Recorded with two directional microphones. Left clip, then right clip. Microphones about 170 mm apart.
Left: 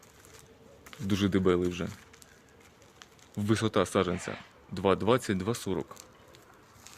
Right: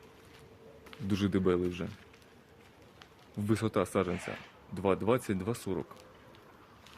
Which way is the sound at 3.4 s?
55° left (ahead or behind).